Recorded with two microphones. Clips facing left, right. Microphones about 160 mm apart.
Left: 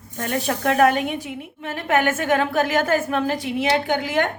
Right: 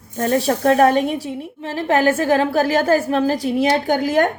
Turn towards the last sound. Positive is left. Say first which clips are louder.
# right 5 dB
turn(degrees=-40)  # may be behind; listen again after turning